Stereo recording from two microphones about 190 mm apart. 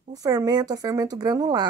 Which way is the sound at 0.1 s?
20° right (ahead or behind).